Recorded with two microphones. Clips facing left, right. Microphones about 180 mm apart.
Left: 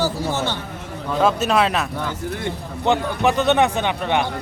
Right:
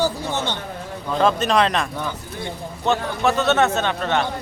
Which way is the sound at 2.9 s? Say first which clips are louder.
Left 1 dB; 15° left (ahead or behind).